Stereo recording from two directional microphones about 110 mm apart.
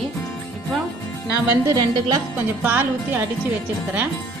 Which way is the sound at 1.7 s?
35° right (ahead or behind).